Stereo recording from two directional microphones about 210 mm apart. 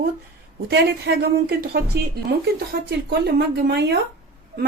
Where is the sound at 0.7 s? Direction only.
50° right (ahead or behind).